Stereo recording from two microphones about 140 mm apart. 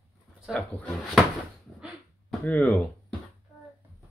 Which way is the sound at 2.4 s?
5° left (ahead or behind).